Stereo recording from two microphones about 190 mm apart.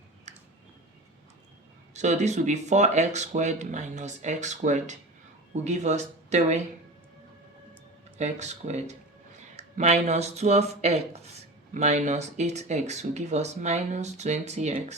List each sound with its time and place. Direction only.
0.3 s a sound: 40° right (ahead or behind)
1.9 s speech: 40° right (ahead or behind)
8.2 s speech: 35° right (ahead or behind)